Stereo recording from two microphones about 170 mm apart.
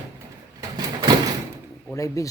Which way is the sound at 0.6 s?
25° right (ahead or behind).